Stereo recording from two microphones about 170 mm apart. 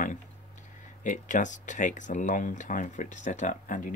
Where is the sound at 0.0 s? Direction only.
50° left (ahead or behind).